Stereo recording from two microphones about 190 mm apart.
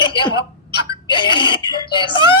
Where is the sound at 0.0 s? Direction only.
25° left (ahead or behind).